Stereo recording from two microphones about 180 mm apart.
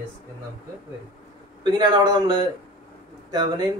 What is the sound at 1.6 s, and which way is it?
A man's voice, 25° right (ahead or behind).